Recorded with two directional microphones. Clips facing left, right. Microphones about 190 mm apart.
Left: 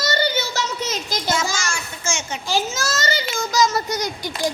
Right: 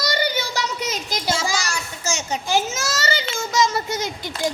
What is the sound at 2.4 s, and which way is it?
A child's voice, 20° right (ahead or behind).